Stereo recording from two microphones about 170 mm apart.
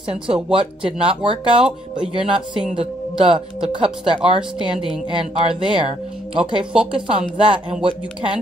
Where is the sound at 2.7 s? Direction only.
30° right (ahead or behind).